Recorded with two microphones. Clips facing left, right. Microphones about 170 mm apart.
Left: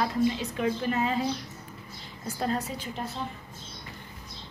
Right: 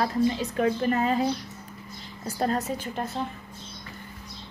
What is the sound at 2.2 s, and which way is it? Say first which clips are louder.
Speech: right 3 dB; 40° right (ahead or behind).